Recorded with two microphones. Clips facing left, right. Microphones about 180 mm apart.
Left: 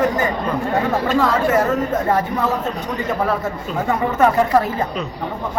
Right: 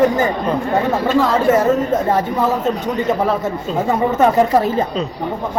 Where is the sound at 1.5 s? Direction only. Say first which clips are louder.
Right 3 dB; 25° right (ahead or behind).